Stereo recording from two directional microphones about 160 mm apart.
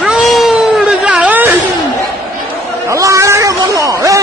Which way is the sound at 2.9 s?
20° right (ahead or behind).